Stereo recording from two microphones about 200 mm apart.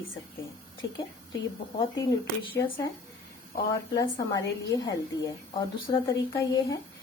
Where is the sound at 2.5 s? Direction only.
25° left (ahead or behind).